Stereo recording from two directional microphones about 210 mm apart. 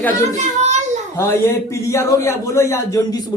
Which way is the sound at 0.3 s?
35° right (ahead or behind).